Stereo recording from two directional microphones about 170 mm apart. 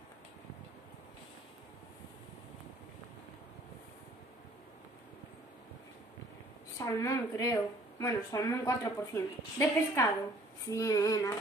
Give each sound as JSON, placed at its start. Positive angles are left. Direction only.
{"t": 6.8, "sound": "a woman's voice", "side_deg": 20}
{"t": 10.7, "sound": "female singing", "side_deg": 20}